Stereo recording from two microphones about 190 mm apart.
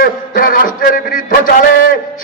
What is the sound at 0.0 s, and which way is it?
A man's voice, 50° left (ahead or behind).